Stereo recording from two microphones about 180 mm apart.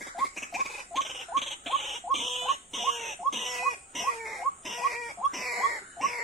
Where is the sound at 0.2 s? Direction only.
Centre (ahead or behind).